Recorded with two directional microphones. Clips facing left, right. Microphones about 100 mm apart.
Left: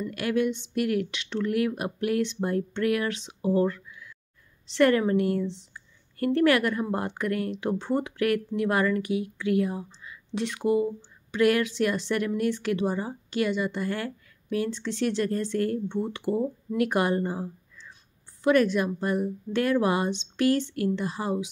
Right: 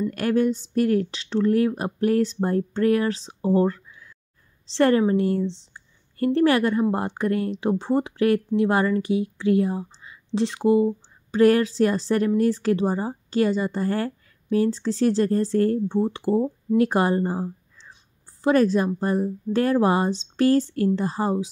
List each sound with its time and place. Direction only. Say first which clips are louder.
0.1 s a woman's voice: right 1 dB; 40° right (ahead or behind)